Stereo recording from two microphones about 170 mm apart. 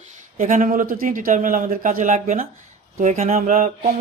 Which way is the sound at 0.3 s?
50° right (ahead or behind).